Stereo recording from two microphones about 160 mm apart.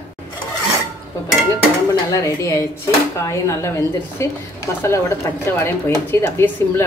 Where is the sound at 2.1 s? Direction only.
20° left (ahead or behind).